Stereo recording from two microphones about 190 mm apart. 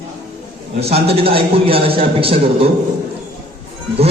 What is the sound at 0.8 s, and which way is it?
A man's voice, 30° right (ahead or behind).